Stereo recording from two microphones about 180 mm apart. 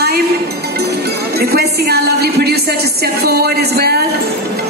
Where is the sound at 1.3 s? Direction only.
60° right (ahead or behind).